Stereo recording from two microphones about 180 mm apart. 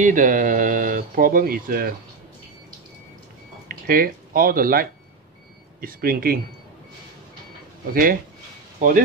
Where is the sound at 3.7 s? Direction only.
55° right (ahead or behind).